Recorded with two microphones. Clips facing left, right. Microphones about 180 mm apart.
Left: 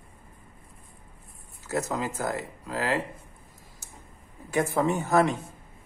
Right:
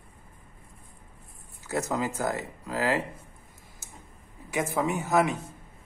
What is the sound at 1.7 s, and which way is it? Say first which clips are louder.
Speech: even; 20° right (ahead or behind).